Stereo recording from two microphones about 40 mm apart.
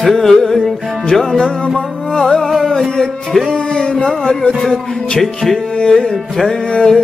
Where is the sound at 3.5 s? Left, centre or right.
Centre.